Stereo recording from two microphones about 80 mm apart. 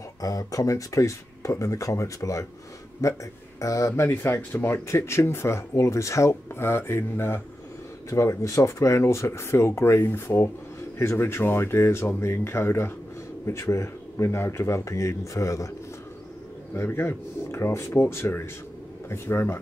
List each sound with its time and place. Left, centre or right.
0.2 s speech: left
16.7 s speech: left